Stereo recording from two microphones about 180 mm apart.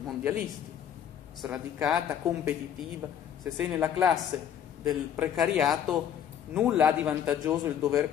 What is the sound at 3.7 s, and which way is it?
A man's voice, 5° right (ahead or behind).